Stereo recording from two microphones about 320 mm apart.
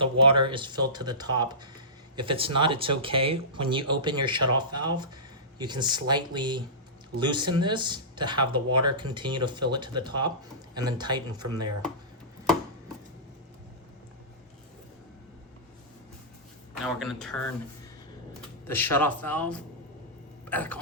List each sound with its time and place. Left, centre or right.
0.0 s speech: centre
16.8 s speech: centre
18.7 s speech: centre